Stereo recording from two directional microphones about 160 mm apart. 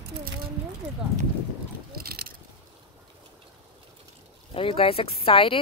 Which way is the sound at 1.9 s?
70° right (ahead or behind).